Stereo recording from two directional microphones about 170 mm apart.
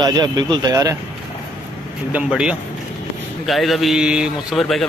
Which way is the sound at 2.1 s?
5° right (ahead or behind).